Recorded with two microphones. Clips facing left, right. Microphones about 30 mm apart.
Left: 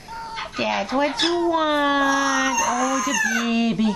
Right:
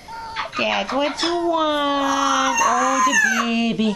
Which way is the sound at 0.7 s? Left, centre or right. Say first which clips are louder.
Left 1 dB; right.